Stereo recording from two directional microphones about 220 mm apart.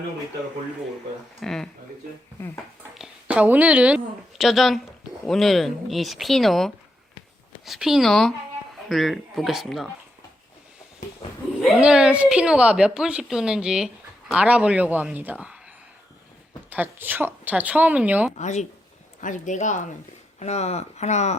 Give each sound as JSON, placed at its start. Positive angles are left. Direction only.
{"t": 1.4, "sound": "a woman's voice", "side_deg": 0}
{"t": 3.0, "sound": "a woman's voice", "side_deg": -5}
{"t": 11.2, "sound": "a sound", "side_deg": 25}
{"t": 11.6, "sound": "a woman's voice", "side_deg": -5}
{"t": 16.6, "sound": "speech", "side_deg": -10}
{"t": 18.3, "sound": "speech", "side_deg": 35}